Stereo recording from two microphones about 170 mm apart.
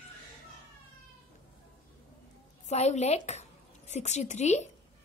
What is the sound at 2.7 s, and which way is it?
A woman's voice, 40° left (ahead or behind).